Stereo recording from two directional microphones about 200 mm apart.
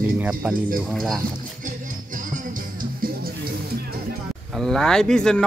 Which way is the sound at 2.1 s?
45° right (ahead or behind).